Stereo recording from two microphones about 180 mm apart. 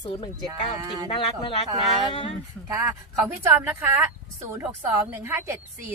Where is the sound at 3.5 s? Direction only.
10° right (ahead or behind).